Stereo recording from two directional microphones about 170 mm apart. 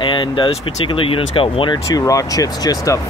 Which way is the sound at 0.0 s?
30° left (ahead or behind).